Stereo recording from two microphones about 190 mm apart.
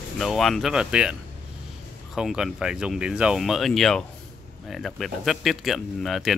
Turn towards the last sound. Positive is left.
turn(degrees=0)  # may be behind; listen again after turning